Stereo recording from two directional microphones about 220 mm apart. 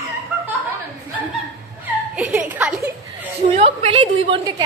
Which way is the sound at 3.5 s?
25° right (ahead or behind).